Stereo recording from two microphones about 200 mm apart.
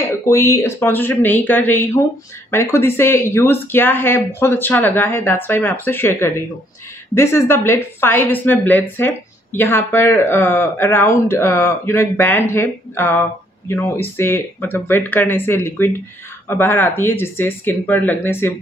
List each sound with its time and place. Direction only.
0.3 s speech: 15° left (ahead or behind)